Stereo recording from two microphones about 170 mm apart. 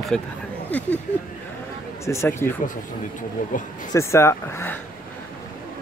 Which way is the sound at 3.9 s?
15° left (ahead or behind).